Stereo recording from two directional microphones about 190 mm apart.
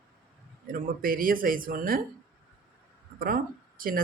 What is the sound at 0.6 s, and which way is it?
Speech, 50° right (ahead or behind).